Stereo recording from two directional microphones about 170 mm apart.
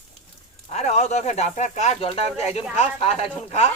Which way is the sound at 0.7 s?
40° left (ahead or behind).